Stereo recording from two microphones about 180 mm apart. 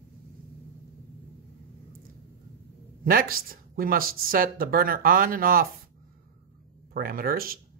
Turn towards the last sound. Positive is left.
turn(degrees=-55)  # may be behind; listen again after turning